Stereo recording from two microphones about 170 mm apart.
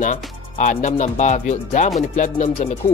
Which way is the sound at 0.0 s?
45° left (ahead or behind).